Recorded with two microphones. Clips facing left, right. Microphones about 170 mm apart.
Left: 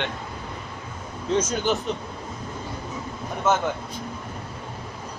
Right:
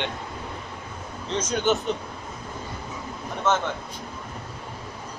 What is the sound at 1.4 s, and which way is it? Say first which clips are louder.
Speech: right 1 dB; centre (ahead or behind).